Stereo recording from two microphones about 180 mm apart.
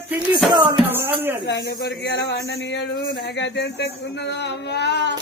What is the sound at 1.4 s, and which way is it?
Speech, 70° left (ahead or behind).